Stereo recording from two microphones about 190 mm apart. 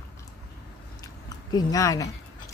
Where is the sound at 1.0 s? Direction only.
20° left (ahead or behind).